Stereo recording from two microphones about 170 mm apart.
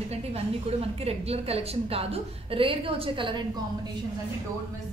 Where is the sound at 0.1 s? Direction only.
35° right (ahead or behind).